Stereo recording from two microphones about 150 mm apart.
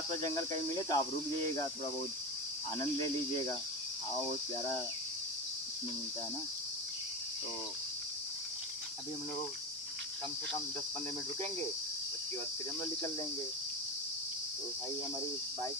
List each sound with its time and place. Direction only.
0.2 s cricket: 25° left (ahead or behind)